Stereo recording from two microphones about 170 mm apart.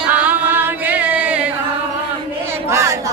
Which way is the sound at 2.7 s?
15° right (ahead or behind).